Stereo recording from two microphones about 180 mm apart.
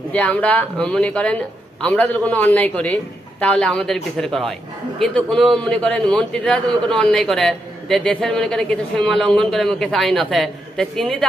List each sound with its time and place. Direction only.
0.1 s a man's voice: 5° left (ahead or behind)